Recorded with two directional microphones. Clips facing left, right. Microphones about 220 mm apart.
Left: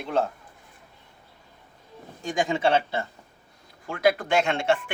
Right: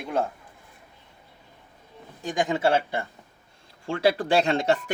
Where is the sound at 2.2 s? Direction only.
Centre (ahead or behind).